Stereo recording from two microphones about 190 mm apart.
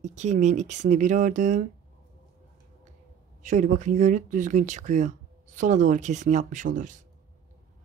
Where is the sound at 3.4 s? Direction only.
40° right (ahead or behind).